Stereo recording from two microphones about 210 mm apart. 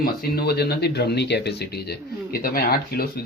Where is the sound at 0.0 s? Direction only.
45° left (ahead or behind).